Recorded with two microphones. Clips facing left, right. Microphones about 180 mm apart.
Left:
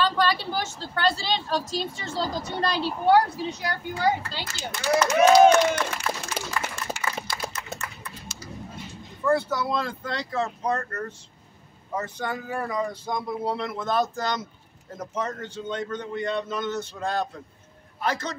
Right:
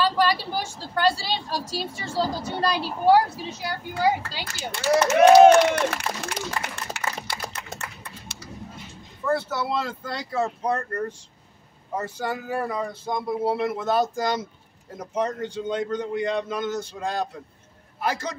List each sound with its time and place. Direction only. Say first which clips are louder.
0.0 s a woman's voice: right 1 dB; 10° right (ahead or behind)
5.4 s speech: right 3 dB; 70° right (ahead or behind)
7.5 s a sound: left 1 dB; 60° right (ahead or behind)
9.2 s speech: left 2 dB; 5° right (ahead or behind)
11.9 s speech: right 1 dB; 10° right (ahead or behind)